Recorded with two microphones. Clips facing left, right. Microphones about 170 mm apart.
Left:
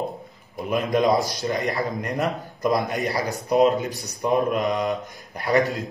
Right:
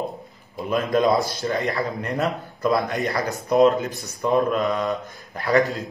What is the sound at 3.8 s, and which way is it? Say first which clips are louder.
A man's voice: right 1 dB; 15° left (ahead or behind).